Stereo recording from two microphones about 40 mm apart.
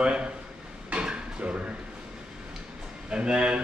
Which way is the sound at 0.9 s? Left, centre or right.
Right.